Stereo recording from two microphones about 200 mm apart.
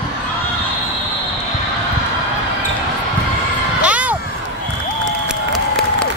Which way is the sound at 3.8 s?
5° right (ahead or behind).